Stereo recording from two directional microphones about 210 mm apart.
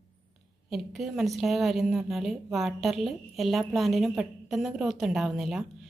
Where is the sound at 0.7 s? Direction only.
Centre (ahead or behind).